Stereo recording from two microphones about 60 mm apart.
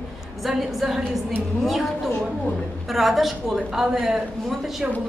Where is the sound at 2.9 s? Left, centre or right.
Centre.